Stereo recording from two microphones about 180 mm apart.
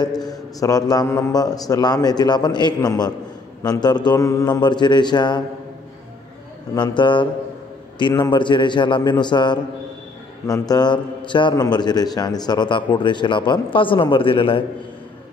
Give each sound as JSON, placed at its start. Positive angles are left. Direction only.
{"t": 0.0, "sound": "a man's voice", "side_deg": 20}
{"t": 6.7, "sound": "a man's voice", "side_deg": 25}